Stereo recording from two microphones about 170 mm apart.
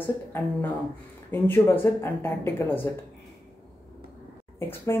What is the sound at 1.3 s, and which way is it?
Speech, 10° left (ahead or behind).